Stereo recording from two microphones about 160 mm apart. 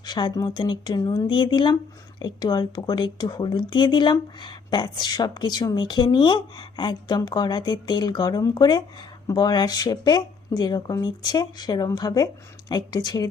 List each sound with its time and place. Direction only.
0.0 s speech: 25° left (ahead or behind)